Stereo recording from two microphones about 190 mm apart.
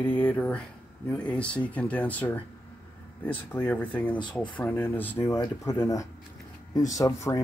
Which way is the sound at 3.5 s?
10° left (ahead or behind).